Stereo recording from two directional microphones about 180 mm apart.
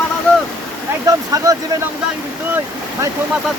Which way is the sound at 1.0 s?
20° right (ahead or behind).